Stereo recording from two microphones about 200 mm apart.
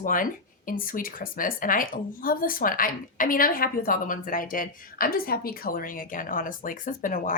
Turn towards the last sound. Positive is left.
turn(degrees=40)  # may be behind; listen again after turning